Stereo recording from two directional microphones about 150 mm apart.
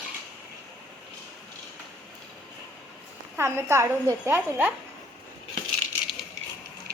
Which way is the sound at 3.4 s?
15° right (ahead or behind).